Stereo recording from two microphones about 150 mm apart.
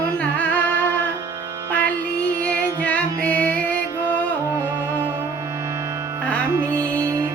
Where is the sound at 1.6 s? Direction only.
10° left (ahead or behind).